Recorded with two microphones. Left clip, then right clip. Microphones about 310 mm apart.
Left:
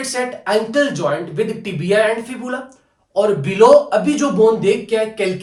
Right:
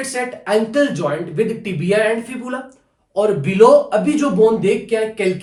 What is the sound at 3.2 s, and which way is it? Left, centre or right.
A man's voice, centre.